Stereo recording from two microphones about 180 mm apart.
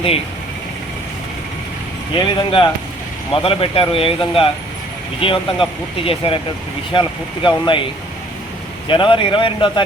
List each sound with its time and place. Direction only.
2.1 s a man's voice: 30° left (ahead or behind)
8.9 s a man's voice: 25° left (ahead or behind)